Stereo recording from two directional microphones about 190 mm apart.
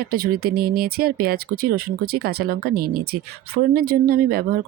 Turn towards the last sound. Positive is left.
turn(degrees=-50)  # may be behind; listen again after turning